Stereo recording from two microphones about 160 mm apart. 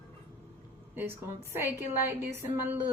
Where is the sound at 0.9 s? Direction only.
15° right (ahead or behind).